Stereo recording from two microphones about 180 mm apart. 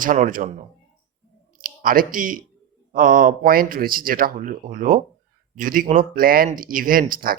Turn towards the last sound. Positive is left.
turn(degrees=-50)  # may be behind; listen again after turning